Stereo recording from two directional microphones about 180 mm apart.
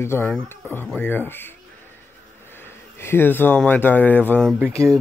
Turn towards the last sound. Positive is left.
turn(degrees=-15)  # may be behind; listen again after turning